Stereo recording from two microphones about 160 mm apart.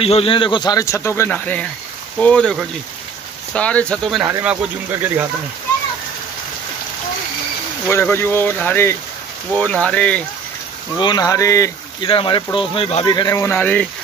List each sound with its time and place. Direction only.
0.0 s speech: 35° left (ahead or behind); by 4.3 s centre (ahead or behind)
4.3 s speech: 15° right (ahead or behind)
7.9 s speech: 15° left (ahead or behind)
11.0 s speech: 25° left (ahead or behind)
12.1 s speech: 35° left (ahead or behind); by 13.8 s 10° left (ahead or behind)